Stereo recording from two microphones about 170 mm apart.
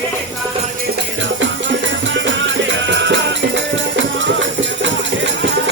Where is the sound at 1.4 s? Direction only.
90° right.